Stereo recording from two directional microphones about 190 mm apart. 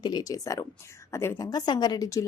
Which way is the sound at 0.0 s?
20° left (ahead or behind).